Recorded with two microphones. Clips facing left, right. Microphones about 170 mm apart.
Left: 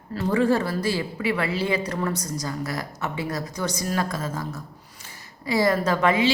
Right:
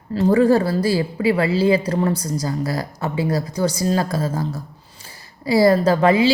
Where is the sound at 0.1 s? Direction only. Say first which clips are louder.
Right 6 dB; 30° right (ahead or behind).